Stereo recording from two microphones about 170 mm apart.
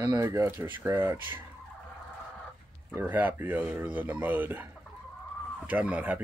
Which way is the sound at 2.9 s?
10° right (ahead or behind).